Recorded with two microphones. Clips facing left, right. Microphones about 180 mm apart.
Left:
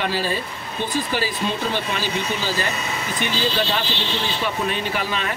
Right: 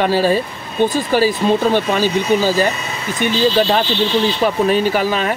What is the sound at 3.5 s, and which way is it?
Speech, 45° right (ahead or behind).